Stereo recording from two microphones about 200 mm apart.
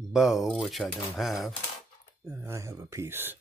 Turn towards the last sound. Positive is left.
turn(degrees=-10)  # may be behind; listen again after turning